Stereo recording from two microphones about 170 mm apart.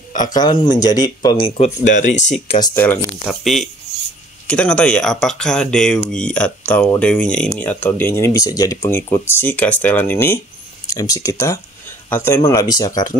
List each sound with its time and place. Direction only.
0.3 s speech: 25° left (ahead or behind); by 2.0 s 40° left (ahead or behind)
2.4 s speech: 30° left (ahead or behind)
2.7 s speech: 10° left (ahead or behind)
3.3 s speech: centre (ahead or behind); by 13.1 s 25° left (ahead or behind)